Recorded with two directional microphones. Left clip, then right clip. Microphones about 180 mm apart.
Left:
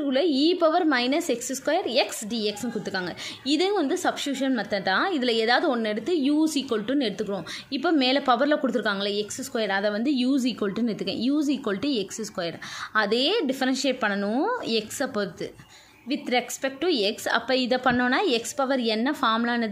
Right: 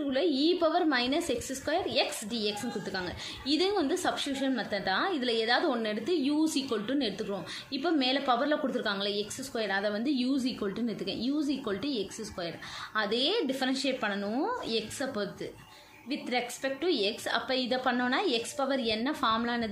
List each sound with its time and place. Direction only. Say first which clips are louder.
0.1 s a woman's voice: left 5 dB; 45° left (ahead or behind)